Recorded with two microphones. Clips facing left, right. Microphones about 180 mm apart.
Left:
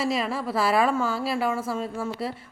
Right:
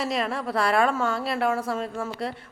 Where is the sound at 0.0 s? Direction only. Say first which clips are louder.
Left 1 dB; centre (ahead or behind).